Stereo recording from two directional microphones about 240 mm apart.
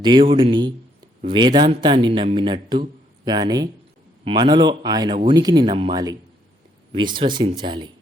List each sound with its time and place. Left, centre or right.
0.0 s a man's voice: centre